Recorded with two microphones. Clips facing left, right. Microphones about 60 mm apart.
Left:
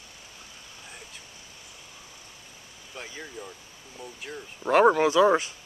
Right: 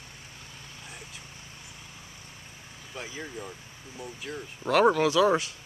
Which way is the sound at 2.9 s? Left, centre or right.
Centre.